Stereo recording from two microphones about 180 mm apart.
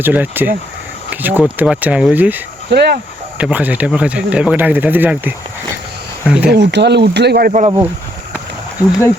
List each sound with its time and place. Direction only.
0.0 s speech: 10° right (ahead or behind)
2.6 s speech: 65° right (ahead or behind)
3.3 s speech: 10° right (ahead or behind)
6.5 s speech: 70° right (ahead or behind)